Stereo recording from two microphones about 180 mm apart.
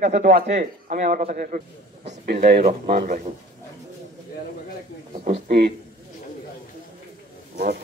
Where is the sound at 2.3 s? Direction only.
60° right (ahead or behind).